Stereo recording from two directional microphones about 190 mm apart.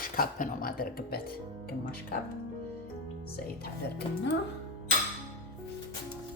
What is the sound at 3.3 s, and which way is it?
Speech, 55° left (ahead or behind).